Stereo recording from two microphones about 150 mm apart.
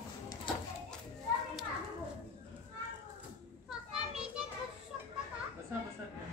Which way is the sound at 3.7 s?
5° right (ahead or behind).